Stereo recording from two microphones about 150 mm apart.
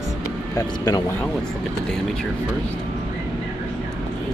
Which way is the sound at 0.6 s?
25° left (ahead or behind).